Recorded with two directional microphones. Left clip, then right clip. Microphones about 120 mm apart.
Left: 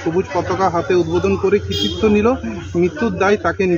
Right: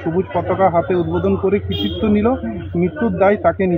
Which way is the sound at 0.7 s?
40° right (ahead or behind).